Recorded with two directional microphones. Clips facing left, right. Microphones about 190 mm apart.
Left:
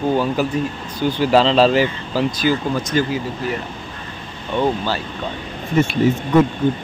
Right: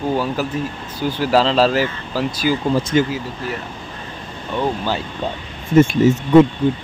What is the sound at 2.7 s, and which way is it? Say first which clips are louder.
Speech: right 3 dB; 30° right (ahead or behind).